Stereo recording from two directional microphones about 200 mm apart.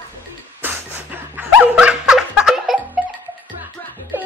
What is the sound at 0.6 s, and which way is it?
Laughter, 10° right (ahead or behind).